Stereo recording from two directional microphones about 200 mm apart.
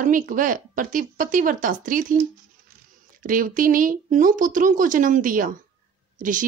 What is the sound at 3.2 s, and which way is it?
A woman's voice, 40° right (ahead or behind).